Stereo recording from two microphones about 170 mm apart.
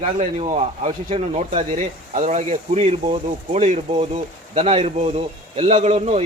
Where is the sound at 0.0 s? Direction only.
35° right (ahead or behind).